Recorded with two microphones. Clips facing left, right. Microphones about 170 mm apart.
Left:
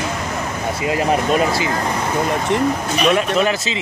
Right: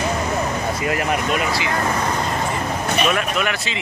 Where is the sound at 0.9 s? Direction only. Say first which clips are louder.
Left 6 dB; 30° left (ahead or behind).